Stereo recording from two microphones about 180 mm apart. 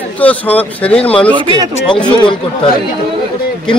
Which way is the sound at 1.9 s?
25° left (ahead or behind).